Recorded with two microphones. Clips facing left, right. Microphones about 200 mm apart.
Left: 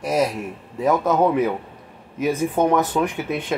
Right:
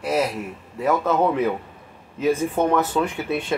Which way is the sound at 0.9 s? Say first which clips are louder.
Left 2 dB; 15° left (ahead or behind).